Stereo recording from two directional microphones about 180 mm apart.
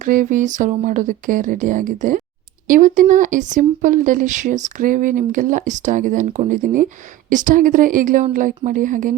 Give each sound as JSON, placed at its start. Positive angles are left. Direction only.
{"t": 0.0, "sound": "speech", "side_deg": -45}